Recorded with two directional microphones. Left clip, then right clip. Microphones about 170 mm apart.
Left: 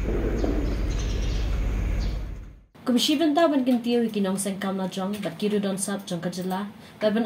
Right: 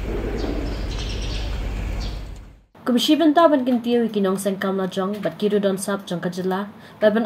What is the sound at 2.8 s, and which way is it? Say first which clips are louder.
A woman's voice: right 5 dB; 30° right (ahead or behind).